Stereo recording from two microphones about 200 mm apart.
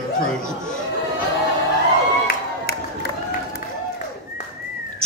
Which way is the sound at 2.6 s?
50° left (ahead or behind).